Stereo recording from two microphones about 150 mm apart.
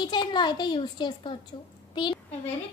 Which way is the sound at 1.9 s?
30° left (ahead or behind).